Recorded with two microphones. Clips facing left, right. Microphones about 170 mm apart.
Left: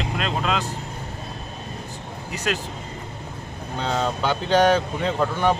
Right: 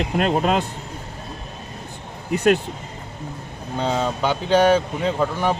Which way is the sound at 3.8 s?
5° right (ahead or behind).